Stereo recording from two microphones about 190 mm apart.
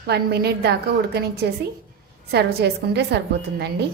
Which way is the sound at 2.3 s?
60° right (ahead or behind).